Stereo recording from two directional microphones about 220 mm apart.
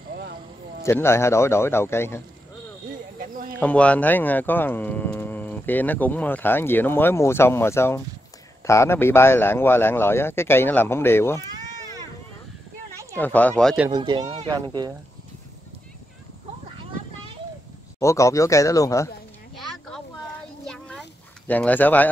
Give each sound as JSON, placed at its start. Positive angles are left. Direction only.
{"t": 0.1, "sound": "a sound", "side_deg": -45}
{"t": 0.8, "sound": "speech", "side_deg": 10}
{"t": 3.5, "sound": "speech", "side_deg": 5}
{"t": 13.1, "sound": "speech", "side_deg": 10}
{"t": 13.8, "sound": "speech", "side_deg": -20}
{"t": 17.9, "sound": "speech", "side_deg": 15}
{"t": 20.6, "sound": "a sound", "side_deg": 5}
{"t": 21.5, "sound": "speech", "side_deg": 5}